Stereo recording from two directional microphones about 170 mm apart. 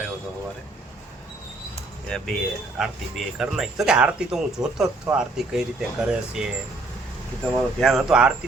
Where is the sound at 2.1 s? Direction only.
5° left (ahead or behind).